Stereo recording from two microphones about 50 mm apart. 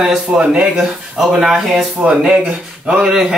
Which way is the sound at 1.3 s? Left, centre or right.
Centre.